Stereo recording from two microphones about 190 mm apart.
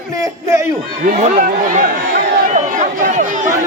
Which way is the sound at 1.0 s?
40° right (ahead or behind).